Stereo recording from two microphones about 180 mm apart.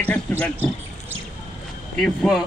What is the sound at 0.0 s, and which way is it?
Speech, 10° left (ahead or behind).